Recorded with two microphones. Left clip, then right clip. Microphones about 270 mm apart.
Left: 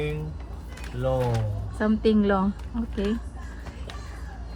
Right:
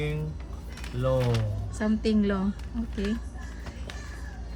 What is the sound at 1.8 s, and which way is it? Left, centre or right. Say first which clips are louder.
Speech: left 4 dB; left.